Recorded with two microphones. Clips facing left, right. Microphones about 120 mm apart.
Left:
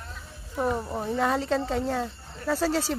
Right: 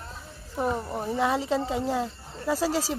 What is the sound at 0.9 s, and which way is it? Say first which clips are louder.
Speech: right 1 dB; 5° right (ahead or behind).